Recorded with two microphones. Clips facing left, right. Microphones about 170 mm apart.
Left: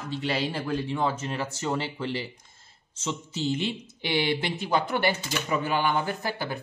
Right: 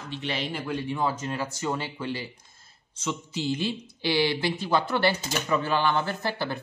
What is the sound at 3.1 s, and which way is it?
Speech, 20° left (ahead or behind).